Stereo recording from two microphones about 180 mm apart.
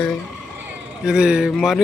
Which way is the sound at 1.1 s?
5° right (ahead or behind).